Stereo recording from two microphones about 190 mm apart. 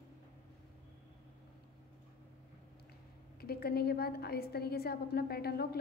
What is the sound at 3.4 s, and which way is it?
A woman's voice, 55° left (ahead or behind).